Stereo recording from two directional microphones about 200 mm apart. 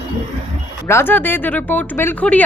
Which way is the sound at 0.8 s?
10° left (ahead or behind).